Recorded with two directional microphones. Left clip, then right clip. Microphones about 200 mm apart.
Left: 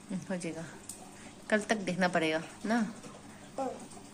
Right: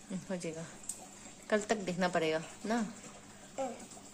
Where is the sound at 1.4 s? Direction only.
15° right (ahead or behind).